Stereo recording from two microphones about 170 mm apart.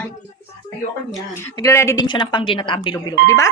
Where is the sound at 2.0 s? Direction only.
25° left (ahead or behind).